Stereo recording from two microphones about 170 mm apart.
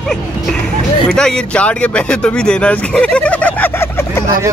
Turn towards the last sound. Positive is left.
turn(degrees=10)  # may be behind; listen again after turning